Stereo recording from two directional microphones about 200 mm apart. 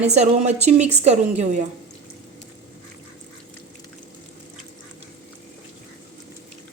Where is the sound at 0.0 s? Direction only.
35° right (ahead or behind).